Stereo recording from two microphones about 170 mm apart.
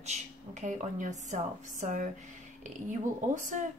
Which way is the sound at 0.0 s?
40° right (ahead or behind).